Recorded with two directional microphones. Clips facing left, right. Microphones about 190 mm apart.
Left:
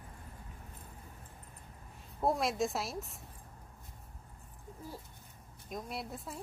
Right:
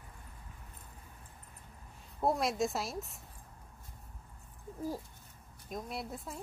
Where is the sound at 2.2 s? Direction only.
Centre (ahead or behind).